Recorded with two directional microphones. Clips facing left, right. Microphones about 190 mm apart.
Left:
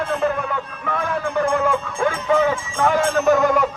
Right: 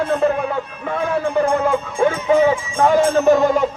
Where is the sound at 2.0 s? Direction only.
25° right (ahead or behind).